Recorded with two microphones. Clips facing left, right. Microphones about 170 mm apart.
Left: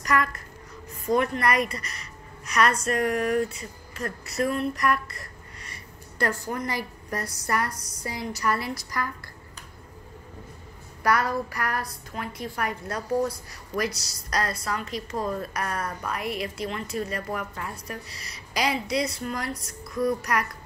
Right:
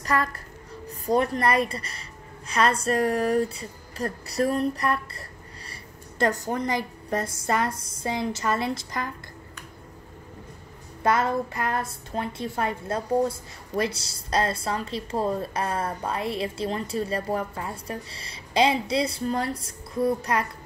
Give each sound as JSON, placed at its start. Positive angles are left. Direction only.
{"t": 0.0, "sound": "a woman's voice", "side_deg": -30}
{"t": 11.0, "sound": "a woman's voice", "side_deg": -25}